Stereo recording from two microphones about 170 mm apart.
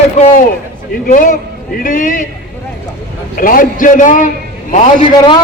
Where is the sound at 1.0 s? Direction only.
55° left (ahead or behind).